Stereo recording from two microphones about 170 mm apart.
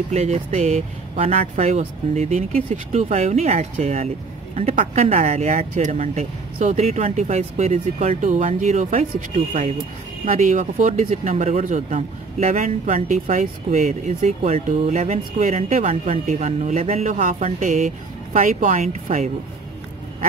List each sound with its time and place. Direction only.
0.1 s speech: 40° right (ahead or behind)